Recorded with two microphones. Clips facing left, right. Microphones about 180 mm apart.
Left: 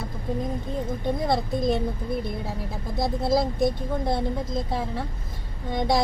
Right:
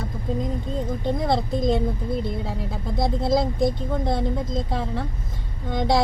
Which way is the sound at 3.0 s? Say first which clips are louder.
Right 1 dB; 20° right (ahead or behind).